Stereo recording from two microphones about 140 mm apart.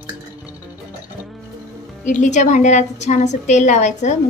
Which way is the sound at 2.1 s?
60° left (ahead or behind).